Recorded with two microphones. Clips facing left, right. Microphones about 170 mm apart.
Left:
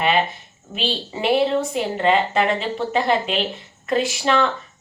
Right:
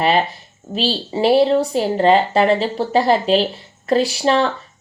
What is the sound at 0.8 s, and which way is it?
A woman's voice, 35° right (ahead or behind).